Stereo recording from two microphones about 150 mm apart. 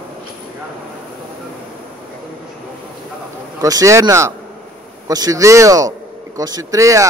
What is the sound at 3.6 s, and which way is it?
A man's voice, 25° right (ahead or behind).